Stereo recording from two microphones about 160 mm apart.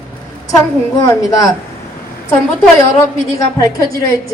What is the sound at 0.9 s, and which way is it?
Speech, 20° left (ahead or behind).